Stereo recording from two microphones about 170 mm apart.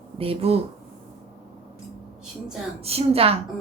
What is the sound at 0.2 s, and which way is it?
Speech, 35° right (ahead or behind).